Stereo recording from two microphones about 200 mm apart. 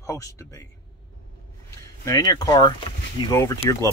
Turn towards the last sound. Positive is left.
turn(degrees=15)  # may be behind; listen again after turning